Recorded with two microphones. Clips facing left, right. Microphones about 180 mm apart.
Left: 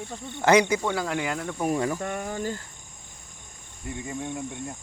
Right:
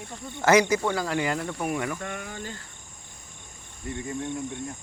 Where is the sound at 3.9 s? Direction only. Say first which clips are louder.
Right 1 dB; 10° left (ahead or behind).